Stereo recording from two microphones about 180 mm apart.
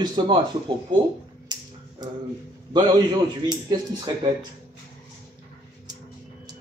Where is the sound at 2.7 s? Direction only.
20° right (ahead or behind).